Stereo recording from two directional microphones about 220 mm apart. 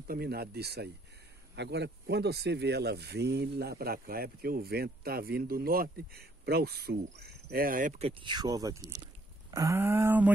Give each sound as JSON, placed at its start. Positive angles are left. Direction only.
{"t": 0.0, "sound": "speech", "side_deg": -45}